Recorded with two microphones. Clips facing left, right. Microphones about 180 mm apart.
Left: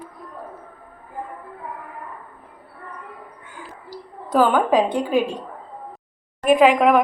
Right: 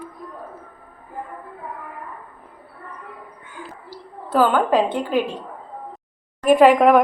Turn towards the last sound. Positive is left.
turn(degrees=0)  # may be behind; listen again after turning